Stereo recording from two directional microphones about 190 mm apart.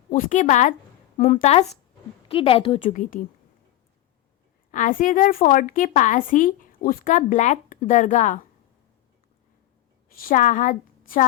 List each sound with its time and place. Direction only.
0.1 s a woman's voice: 45° left (ahead or behind)
2.8 s a woman's voice: 45° left (ahead or behind)
4.7 s a woman's voice: 45° left (ahead or behind)
10.1 s a woman's voice: 50° left (ahead or behind)